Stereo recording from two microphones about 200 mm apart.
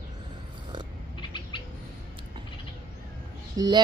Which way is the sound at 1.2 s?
25° left (ahead or behind).